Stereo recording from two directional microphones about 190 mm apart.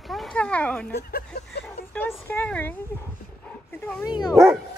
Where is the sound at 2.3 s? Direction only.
10° left (ahead or behind).